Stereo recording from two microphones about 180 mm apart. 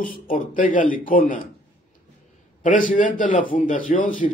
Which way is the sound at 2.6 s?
45° left (ahead or behind).